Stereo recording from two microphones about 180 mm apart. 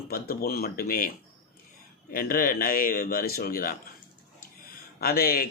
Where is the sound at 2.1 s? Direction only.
55° left (ahead or behind).